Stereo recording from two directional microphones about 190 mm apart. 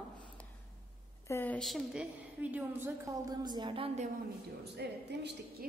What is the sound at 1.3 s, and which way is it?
A woman's voice, 10° left (ahead or behind).